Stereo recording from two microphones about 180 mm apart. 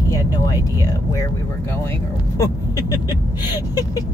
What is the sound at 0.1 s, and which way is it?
Speech, 15° left (ahead or behind).